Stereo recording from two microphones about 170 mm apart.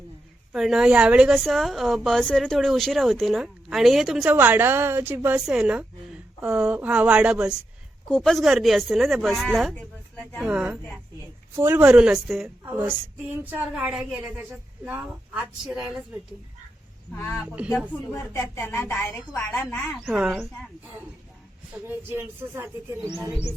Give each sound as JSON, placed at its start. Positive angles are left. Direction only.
{"t": 0.5, "sound": "a woman's voice", "side_deg": -5}
{"t": 10.4, "sound": "a woman's voice", "side_deg": -5}
{"t": 17.2, "sound": "a woman's voice", "side_deg": 15}
{"t": 17.4, "sound": "a woman's voice", "side_deg": -5}
{"t": 17.7, "sound": "a woman's voice", "side_deg": 10}
{"t": 20.1, "sound": "a woman's voice", "side_deg": -5}
{"t": 21.8, "sound": "a woman's voice", "side_deg": -15}
{"t": 23.0, "sound": "speech", "side_deg": -25}